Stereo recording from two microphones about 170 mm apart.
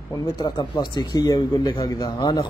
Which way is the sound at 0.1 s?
25° left (ahead or behind).